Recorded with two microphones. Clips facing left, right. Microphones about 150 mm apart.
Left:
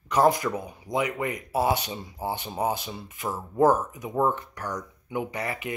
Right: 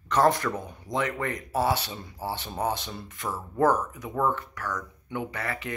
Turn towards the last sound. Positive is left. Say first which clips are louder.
# left 2 dB
turn(degrees=20)  # may be behind; listen again after turning